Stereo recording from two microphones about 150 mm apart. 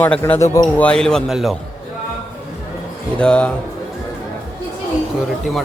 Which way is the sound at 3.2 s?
5° left (ahead or behind).